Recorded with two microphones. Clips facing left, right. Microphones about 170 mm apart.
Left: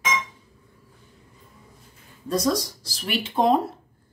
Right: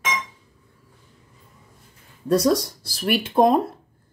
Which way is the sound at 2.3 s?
60° right (ahead or behind).